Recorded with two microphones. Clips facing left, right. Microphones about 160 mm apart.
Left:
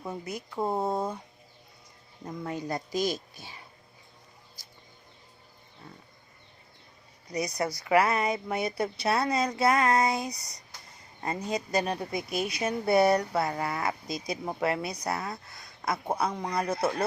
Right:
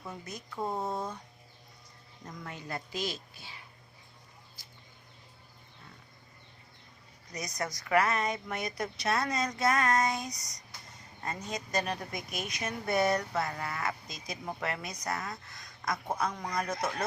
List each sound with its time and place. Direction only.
0.5 s speech: 30° left (ahead or behind)
2.5 s speech: 35° left (ahead or behind)
7.5 s speech: 30° left (ahead or behind)
8.1 s speech: 10° left (ahead or behind)
8.4 s speech: 30° left (ahead or behind)